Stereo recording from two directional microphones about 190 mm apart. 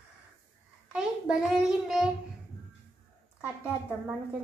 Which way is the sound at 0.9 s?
5° right (ahead or behind).